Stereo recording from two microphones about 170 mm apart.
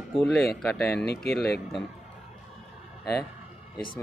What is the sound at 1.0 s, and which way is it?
Speech, 65° left (ahead or behind).